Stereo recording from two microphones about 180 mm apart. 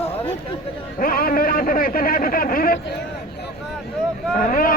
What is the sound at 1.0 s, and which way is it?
A man's voice, 55° left (ahead or behind).